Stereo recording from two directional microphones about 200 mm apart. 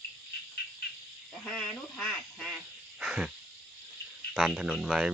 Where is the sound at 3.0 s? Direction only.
Centre (ahead or behind).